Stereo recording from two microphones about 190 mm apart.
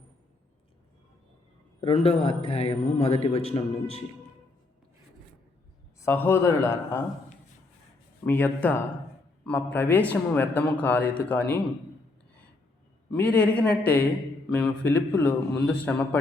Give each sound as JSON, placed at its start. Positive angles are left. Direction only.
{"t": 1.8, "sound": "a man's voice", "side_deg": 30}
{"t": 6.0, "sound": "a man's voice", "side_deg": 10}
{"t": 8.2, "sound": "a man's voice", "side_deg": 10}
{"t": 13.1, "sound": "a man's voice", "side_deg": 5}